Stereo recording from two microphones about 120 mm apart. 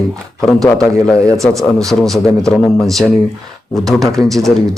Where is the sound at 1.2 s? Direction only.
25° right (ahead or behind).